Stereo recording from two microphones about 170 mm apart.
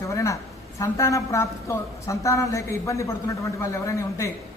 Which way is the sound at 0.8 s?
20° left (ahead or behind).